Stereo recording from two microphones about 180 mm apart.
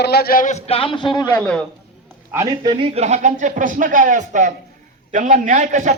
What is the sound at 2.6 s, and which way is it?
A man's voice, 35° right (ahead or behind).